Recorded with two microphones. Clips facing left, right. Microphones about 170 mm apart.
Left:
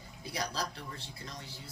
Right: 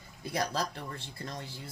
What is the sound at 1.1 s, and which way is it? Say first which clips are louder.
Speech: right 5 dB; 50° right (ahead or behind).